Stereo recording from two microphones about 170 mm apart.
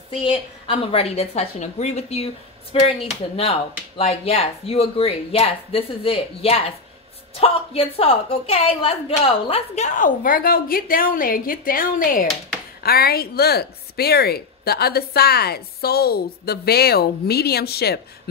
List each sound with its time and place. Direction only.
0.1 s a woman's voice: 30° left (ahead or behind); by 18.0 s 70° left (ahead or behind)